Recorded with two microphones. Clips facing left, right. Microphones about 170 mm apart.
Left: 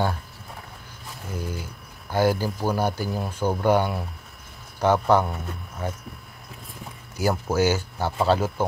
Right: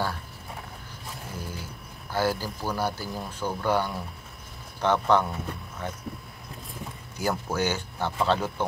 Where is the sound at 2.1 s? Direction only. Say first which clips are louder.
Left 5 dB; 15° left (ahead or behind).